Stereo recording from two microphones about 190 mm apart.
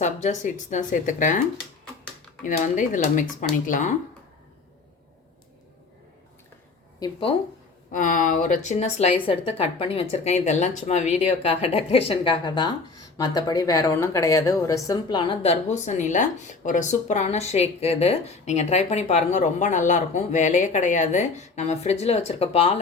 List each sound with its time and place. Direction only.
0.0 s speech: 40° left (ahead or behind)
2.4 s speech: 45° left (ahead or behind)
7.0 s speech: 30° left (ahead or behind)
7.9 s speech: 45° left (ahead or behind)